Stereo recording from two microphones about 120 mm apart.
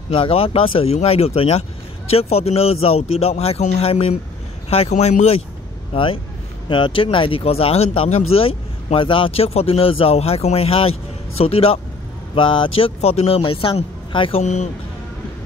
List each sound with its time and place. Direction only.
0.1 s speech: 50° left (ahead or behind); by 5.4 s 70° left (ahead or behind)
6.7 s speech: 45° left (ahead or behind)
12.4 s speech: 45° left (ahead or behind); by 13.4 s 60° left (ahead or behind)
13.4 s speech: 50° left (ahead or behind)
14.4 s speech: 80° left